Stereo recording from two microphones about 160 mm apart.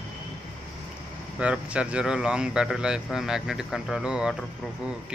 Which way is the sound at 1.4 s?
10° right (ahead or behind).